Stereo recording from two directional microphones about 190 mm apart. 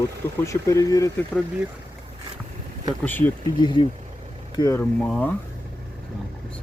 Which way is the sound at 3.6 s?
25° left (ahead or behind).